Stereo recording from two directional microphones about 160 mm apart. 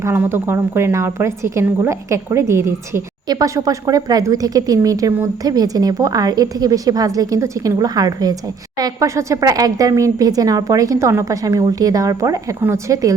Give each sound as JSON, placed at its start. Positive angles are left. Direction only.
{"t": 0.0, "sound": "a woman's voice", "side_deg": -15}